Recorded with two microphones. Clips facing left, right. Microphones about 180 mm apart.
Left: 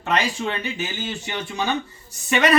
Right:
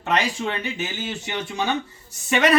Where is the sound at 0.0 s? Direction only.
20° right (ahead or behind).